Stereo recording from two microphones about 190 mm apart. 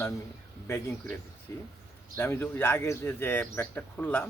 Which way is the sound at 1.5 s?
15° left (ahead or behind).